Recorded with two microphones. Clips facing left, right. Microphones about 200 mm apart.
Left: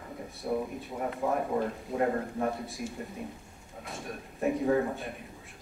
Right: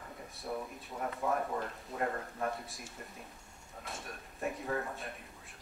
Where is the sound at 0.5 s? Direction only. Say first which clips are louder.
Left 8 dB; 10° left (ahead or behind).